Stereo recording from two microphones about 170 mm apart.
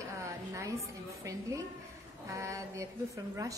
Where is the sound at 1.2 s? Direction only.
20° right (ahead or behind).